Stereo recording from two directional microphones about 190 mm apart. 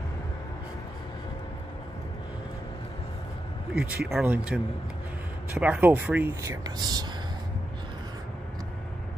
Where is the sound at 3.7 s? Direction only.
5° right (ahead or behind).